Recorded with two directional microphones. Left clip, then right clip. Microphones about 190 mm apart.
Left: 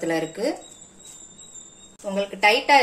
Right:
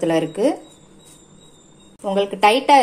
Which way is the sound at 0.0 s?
35° right (ahead or behind).